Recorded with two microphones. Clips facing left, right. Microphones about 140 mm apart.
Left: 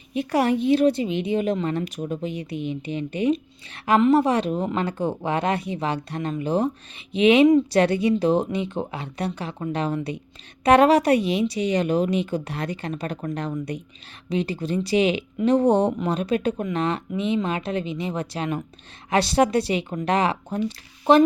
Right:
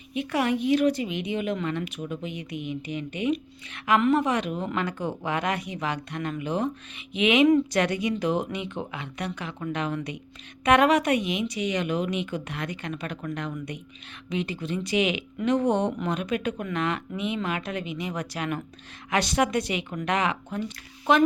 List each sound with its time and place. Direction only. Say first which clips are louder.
0.1 s a woman's voice: left 4 dB; 40° left (ahead or behind)